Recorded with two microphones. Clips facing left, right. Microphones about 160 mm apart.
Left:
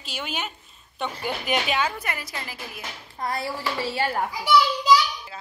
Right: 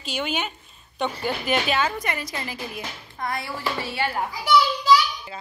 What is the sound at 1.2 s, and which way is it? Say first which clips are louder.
Speech: right 1 dB; 15° left (ahead or behind).